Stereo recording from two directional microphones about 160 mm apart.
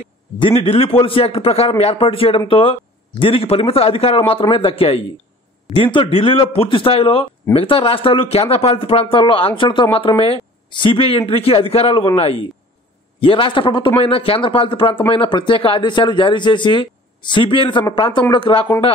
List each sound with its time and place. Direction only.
0.4 s a man's voice: 35° left (ahead or behind)